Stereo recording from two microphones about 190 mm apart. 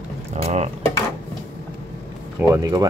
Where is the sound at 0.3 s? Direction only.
35° right (ahead or behind).